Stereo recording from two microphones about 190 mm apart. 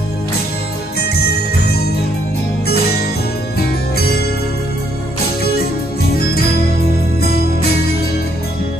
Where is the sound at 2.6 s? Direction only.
55° left (ahead or behind).